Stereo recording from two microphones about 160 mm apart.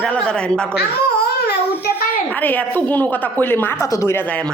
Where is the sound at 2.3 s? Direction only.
10° left (ahead or behind).